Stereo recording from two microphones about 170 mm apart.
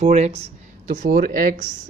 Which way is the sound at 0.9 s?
55° right (ahead or behind).